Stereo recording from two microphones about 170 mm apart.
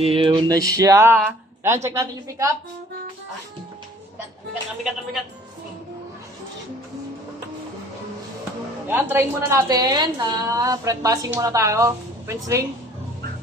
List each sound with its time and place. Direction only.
0.0 s speech: 35° right (ahead or behind)
0.7 s a woman's voice: 15° right (ahead or behind)
8.8 s a woman's voice: 10° right (ahead or behind)